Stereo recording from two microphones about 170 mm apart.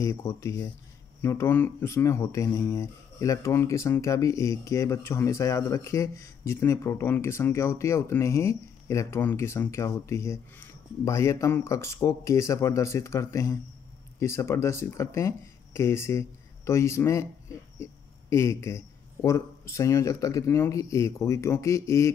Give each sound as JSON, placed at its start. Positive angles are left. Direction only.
{"t": 0.0, "sound": "speech", "side_deg": 20}
{"t": 18.3, "sound": "speech", "side_deg": 15}